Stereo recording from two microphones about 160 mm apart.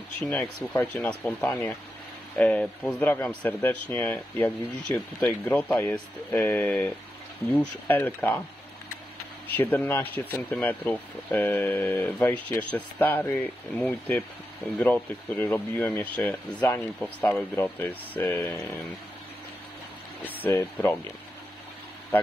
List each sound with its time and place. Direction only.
0.2 s speech: 10° left (ahead or behind)
9.5 s speech: 10° left (ahead or behind)
20.4 s speech: 15° left (ahead or behind)